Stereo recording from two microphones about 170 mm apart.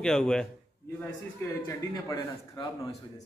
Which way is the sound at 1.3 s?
20° left (ahead or behind).